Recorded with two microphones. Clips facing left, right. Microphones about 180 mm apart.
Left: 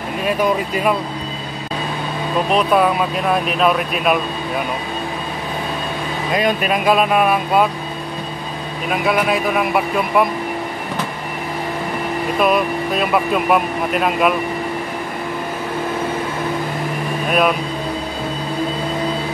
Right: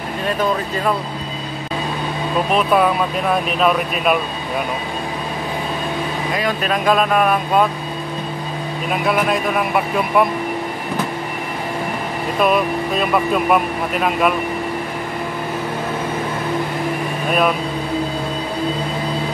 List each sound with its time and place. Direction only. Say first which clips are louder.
0.2 s speech: left 2 dB; 10° left (ahead or behind)
2.5 s speech: left 1 dB; centre (ahead or behind)
6.3 s speech: left 4 dB; 15° left (ahead or behind)
8.9 s speech: left 1 dB; centre (ahead or behind)
12.4 s speech: right 1 dB; centre (ahead or behind)
17.3 s speech: left 1 dB; 5° left (ahead or behind)